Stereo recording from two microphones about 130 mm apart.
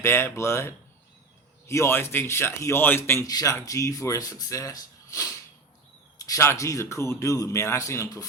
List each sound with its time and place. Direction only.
0.0 s speech: 20° left (ahead or behind)
3.2 s speech: 25° left (ahead or behind)